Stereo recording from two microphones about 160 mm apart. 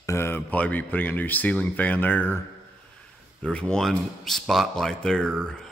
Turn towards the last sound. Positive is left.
turn(degrees=5)  # may be behind; listen again after turning